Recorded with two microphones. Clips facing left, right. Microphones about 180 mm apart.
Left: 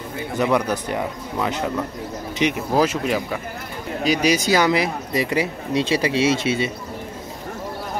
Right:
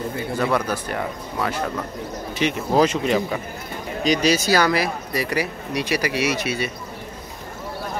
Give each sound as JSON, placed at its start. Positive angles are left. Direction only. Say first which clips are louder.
{"t": 0.4, "sound": "speech", "louder": "left 3 dB", "side_deg": 15}
{"t": 2.7, "sound": "speech", "louder": "right 4 dB", "side_deg": 5}